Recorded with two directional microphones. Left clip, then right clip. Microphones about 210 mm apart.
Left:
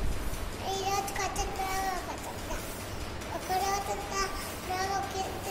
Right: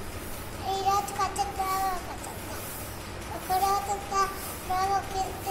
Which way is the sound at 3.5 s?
20° left (ahead or behind).